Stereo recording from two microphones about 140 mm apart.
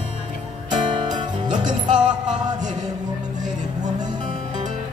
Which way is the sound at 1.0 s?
30° right (ahead or behind).